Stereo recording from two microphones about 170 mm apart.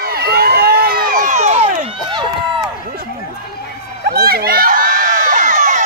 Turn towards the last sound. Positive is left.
turn(degrees=-45)  # may be behind; listen again after turning